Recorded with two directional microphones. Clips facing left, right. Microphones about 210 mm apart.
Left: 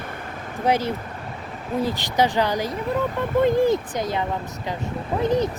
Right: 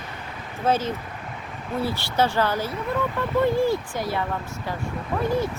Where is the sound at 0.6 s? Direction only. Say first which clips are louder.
Left 1 dB; 15° left (ahead or behind).